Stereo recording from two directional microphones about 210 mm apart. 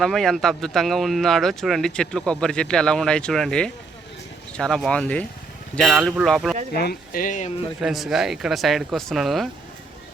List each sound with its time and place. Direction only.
0.0 s speech: centre (ahead or behind)
6.7 s speech: 45° left (ahead or behind)
7.8 s speech: centre (ahead or behind)